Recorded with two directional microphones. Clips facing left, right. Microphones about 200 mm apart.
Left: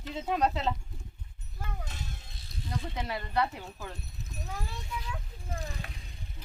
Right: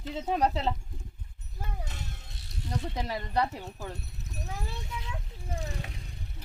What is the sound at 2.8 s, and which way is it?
Speech, 35° right (ahead or behind).